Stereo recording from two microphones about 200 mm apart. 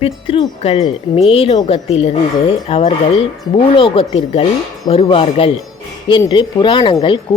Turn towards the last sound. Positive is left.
turn(degrees=25)  # may be behind; listen again after turning